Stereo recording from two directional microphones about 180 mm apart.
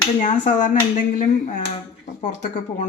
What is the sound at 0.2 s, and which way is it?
Speech, 45° left (ahead or behind).